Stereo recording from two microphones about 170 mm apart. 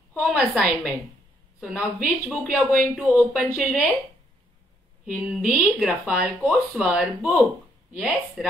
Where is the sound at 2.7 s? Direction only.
5° right (ahead or behind).